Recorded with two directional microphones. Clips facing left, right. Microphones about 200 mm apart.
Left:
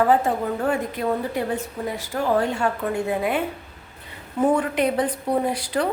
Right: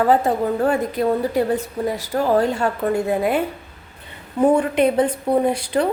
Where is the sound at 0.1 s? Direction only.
35° right (ahead or behind).